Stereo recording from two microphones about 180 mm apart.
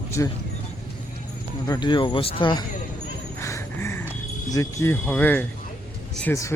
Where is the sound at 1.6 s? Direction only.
20° left (ahead or behind).